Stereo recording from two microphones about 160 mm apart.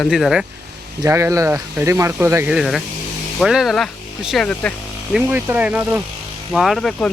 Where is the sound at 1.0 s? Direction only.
20° right (ahead or behind).